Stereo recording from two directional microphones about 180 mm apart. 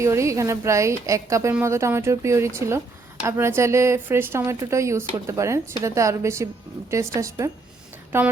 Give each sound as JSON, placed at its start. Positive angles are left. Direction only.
{"t": 0.0, "sound": "speech", "side_deg": -15}